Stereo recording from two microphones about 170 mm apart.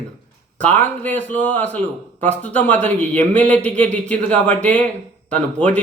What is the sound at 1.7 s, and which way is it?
Speech, 40° right (ahead or behind).